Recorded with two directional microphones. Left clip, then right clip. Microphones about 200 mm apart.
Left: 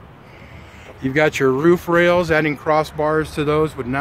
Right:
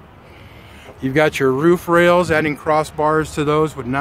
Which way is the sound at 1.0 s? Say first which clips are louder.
Right 1 dB; 20° right (ahead or behind).